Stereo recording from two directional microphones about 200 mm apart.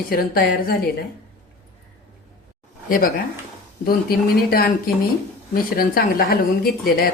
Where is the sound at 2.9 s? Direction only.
45° left (ahead or behind).